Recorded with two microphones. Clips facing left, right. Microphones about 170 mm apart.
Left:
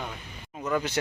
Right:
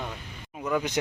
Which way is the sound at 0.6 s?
10° right (ahead or behind).